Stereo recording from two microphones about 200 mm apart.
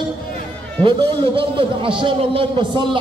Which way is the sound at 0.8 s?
25° right (ahead or behind).